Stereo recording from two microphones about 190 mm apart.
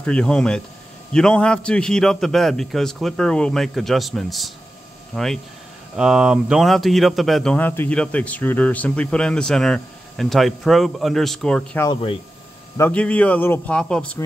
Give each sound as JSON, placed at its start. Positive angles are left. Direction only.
{"t": 0.0, "sound": "speech", "side_deg": 5}
{"t": 11.8, "sound": "speech", "side_deg": 25}
{"t": 12.7, "sound": "speech", "side_deg": 10}